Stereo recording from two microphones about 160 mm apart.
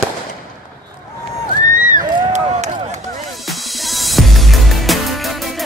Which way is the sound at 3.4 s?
Centre (ahead or behind).